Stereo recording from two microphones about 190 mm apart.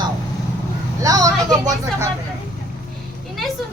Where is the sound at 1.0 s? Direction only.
20° right (ahead or behind).